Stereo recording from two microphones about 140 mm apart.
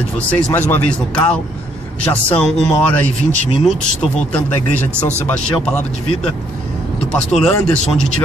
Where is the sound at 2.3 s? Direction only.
5° left (ahead or behind).